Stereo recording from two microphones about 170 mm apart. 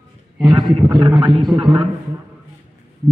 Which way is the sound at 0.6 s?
25° right (ahead or behind).